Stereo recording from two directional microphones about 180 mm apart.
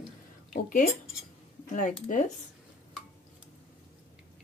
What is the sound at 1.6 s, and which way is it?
Speech, 45° left (ahead or behind).